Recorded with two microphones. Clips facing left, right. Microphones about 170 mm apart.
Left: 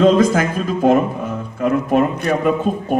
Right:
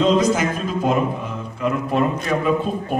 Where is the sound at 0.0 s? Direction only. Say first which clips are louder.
Left 4 dB; 50° left (ahead or behind).